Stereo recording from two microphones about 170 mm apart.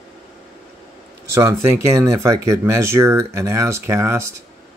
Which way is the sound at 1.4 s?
15° right (ahead or behind).